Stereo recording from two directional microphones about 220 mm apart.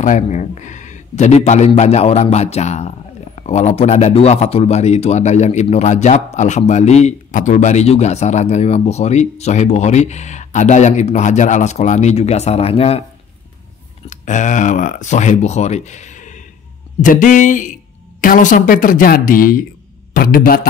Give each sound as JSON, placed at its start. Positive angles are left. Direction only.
{"t": 0.0, "sound": "speech", "side_deg": 35}
{"t": 14.0, "sound": "speech", "side_deg": 35}